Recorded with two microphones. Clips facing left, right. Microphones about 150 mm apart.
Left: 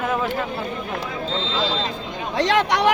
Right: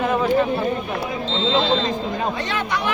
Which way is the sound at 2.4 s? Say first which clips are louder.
Left 6 dB; 90° left.